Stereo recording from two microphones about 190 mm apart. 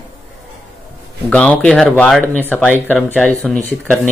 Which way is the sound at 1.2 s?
5° left (ahead or behind).